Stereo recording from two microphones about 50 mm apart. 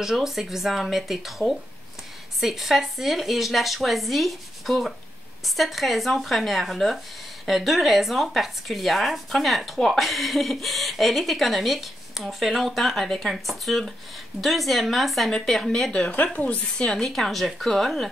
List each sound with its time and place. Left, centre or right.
0.0 s speech: centre
15.9 s speech: left; by 18.0 s centre